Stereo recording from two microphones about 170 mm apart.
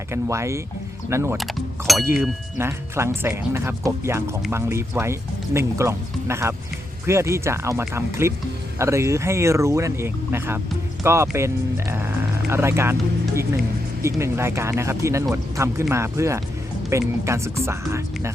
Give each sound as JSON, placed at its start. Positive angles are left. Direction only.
{"t": 0.1, "sound": "speech", "side_deg": -15}
{"t": 1.8, "sound": "a sound", "side_deg": -15}
{"t": 2.6, "sound": "speech", "side_deg": -15}